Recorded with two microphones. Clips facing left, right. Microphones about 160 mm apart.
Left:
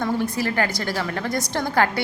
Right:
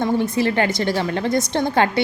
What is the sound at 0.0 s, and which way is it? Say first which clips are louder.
A woman's voice: right 4 dB; 20° right (ahead or behind).